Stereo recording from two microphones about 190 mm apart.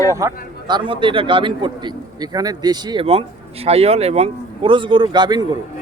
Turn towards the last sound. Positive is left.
turn(degrees=-20)  # may be behind; listen again after turning